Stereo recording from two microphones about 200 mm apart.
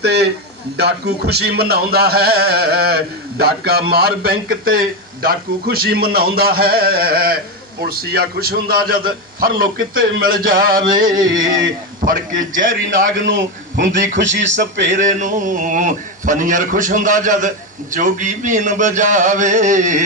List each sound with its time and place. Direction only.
0.0 s a man's voice: 55° right (ahead or behind)
0.8 s music: 55° right (ahead or behind)
13.8 s a man's voice: 40° right (ahead or behind)
14.2 s speech: 65° right (ahead or behind)
14.8 s a man's voice: 40° right (ahead or behind)